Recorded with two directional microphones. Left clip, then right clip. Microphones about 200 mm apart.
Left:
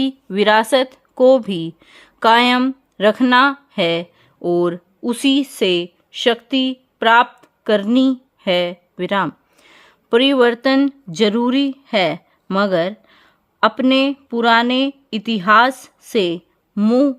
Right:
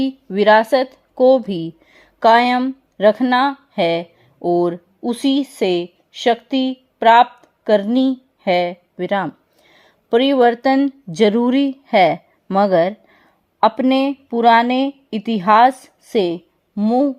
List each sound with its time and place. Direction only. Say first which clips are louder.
0.0 s a woman's voice: right 1 dB; 10° left (ahead or behind)
7.4 s a sound: right 2 dB; 15° left (ahead or behind)
8.4 s speech: right 1 dB; 10° left (ahead or behind)
16.7 s speech: left 1 dB; 25° left (ahead or behind)